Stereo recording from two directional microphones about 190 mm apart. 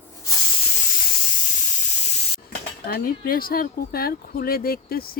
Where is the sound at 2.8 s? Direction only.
50° left (ahead or behind).